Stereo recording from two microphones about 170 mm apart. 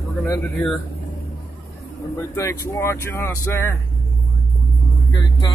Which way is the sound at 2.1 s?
15° left (ahead or behind).